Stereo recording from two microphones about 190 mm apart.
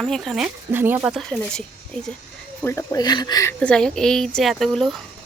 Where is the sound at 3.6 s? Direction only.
5° left (ahead or behind).